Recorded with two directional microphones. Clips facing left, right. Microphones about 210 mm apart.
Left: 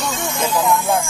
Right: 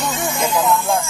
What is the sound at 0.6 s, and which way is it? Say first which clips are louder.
Hubbub: left 1 dB; 10° left (ahead or behind).